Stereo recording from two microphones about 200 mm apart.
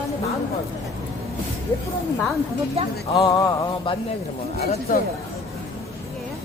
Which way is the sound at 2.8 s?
30° right (ahead or behind).